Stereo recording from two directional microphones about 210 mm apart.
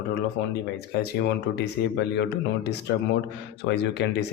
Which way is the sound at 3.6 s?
60° left (ahead or behind).